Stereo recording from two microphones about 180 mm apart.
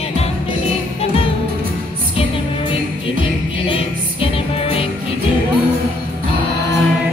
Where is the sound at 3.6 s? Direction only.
30° left (ahead or behind).